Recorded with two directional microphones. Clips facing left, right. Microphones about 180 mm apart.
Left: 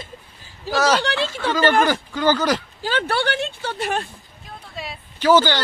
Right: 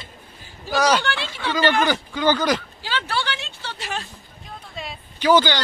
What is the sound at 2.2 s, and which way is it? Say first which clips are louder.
Speech: left 1 dB; 10° left (ahead or behind).